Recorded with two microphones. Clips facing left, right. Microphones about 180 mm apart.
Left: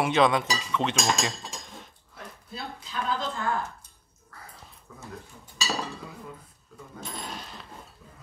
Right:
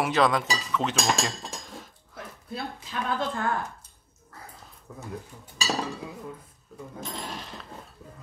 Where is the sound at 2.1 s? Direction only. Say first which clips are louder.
Right 5 dB; 60° right (ahead or behind).